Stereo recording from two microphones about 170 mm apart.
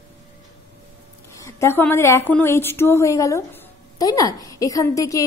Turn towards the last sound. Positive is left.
turn(degrees=20)  # may be behind; listen again after turning